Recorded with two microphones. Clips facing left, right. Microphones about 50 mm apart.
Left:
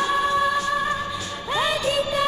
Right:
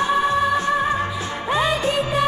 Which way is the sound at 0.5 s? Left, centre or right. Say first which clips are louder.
Right 3 dB; right.